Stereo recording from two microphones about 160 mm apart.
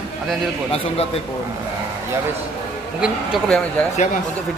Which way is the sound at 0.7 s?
40° left (ahead or behind).